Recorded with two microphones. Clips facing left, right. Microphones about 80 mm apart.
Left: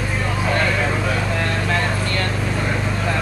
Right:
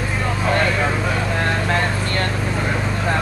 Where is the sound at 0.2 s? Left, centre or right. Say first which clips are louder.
Right 2 dB; centre.